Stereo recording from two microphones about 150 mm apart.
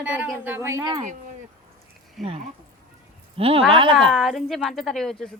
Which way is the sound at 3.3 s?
40° right (ahead or behind).